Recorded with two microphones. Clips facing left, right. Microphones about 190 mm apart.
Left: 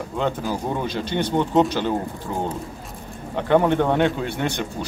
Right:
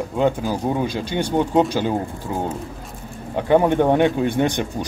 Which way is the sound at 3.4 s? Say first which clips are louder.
Right 2 dB; 15° right (ahead or behind).